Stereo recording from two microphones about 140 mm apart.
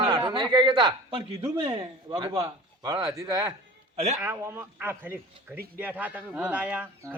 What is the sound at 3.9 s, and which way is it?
Speech, 50° right (ahead or behind).